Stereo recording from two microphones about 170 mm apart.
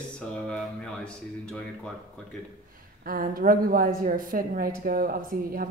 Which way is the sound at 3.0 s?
55° right (ahead or behind).